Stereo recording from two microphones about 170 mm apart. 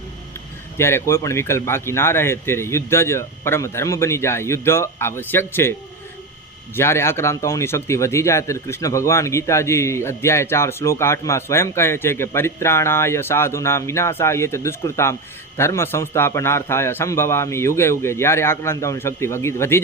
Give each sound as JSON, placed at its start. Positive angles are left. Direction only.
{"t": 0.8, "sound": "speech", "side_deg": 15}
{"t": 6.7, "sound": "speech", "side_deg": 15}